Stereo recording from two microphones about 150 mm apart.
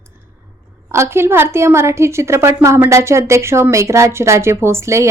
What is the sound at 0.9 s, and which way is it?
A woman's voice, 15° right (ahead or behind).